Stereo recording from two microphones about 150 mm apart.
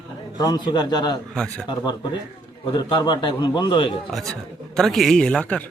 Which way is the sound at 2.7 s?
30° left (ahead or behind).